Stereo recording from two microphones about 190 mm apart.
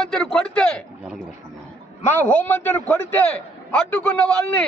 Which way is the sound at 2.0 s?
10° left (ahead or behind).